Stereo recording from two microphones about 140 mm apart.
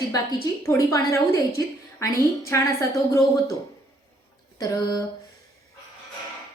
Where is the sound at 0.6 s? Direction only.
20° left (ahead or behind).